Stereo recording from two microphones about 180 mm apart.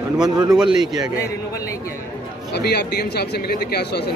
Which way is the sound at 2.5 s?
60° left (ahead or behind).